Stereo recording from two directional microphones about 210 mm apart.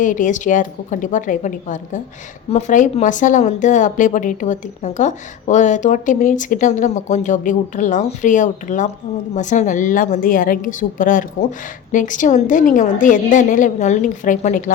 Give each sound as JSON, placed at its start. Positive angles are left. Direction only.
{"t": 0.0, "sound": "a woman's voice", "side_deg": 40}